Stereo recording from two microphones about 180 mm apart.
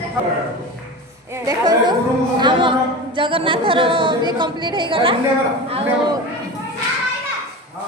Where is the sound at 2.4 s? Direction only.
25° right (ahead or behind).